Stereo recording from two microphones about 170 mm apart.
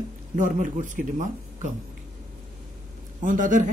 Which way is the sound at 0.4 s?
50° right (ahead or behind).